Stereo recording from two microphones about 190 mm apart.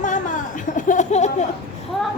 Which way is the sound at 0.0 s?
40° left (ahead or behind).